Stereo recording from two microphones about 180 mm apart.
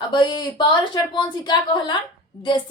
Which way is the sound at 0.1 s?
25° left (ahead or behind).